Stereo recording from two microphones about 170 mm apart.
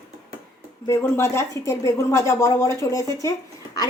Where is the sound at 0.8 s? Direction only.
15° left (ahead or behind).